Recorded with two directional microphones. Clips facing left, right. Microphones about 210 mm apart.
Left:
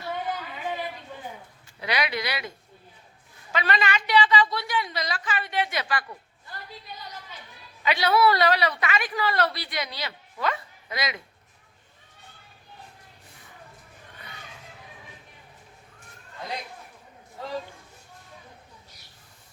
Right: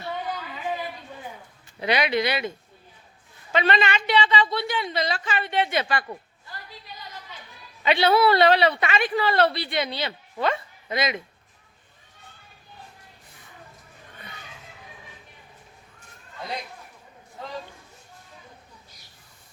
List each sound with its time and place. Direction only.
1.8 s a woman's voice: 25° right (ahead or behind)
3.5 s a woman's voice: 25° right (ahead or behind)
7.9 s a woman's voice: 25° right (ahead or behind)